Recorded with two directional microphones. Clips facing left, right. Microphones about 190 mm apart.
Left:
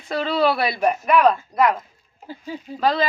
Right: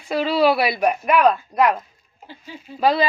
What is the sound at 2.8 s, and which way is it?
Speech, 15° right (ahead or behind).